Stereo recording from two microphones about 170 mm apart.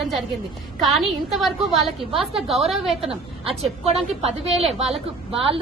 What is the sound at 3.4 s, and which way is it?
Speech, 35° right (ahead or behind).